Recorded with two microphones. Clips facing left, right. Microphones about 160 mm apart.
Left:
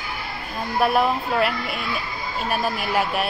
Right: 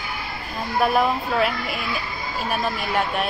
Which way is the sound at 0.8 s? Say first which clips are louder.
Even; centre (ahead or behind).